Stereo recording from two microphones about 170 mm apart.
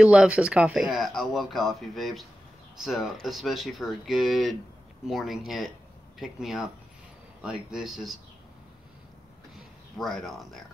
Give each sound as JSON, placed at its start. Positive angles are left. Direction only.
{"t": 0.0, "sound": "speech", "side_deg": -5}
{"t": 9.9, "sound": "speech", "side_deg": 0}